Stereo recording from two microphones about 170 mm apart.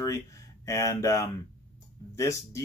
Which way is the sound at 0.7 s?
15° left (ahead or behind).